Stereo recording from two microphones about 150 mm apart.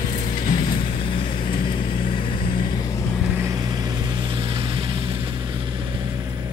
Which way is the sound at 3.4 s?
25° right (ahead or behind).